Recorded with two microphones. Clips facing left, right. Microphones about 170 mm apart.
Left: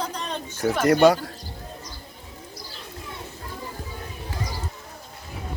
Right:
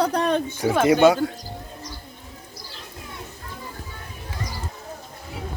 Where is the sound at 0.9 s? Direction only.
Centre (ahead or behind).